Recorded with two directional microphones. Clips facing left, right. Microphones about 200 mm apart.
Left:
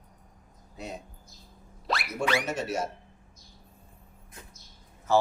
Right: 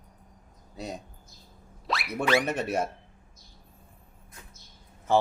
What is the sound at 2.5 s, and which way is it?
Speech, 60° right (ahead or behind).